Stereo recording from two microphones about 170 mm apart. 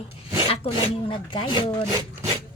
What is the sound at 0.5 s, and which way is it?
Speech, 35° left (ahead or behind).